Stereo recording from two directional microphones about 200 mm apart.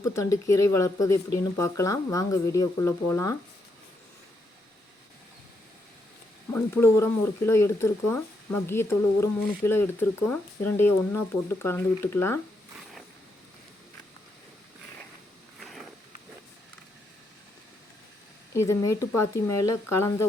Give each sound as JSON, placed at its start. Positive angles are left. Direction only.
{"t": 0.0, "sound": "speech", "side_deg": 15}
{"t": 6.5, "sound": "speech", "side_deg": 10}
{"t": 15.6, "sound": "a sound", "side_deg": 0}
{"t": 18.5, "sound": "speech", "side_deg": 15}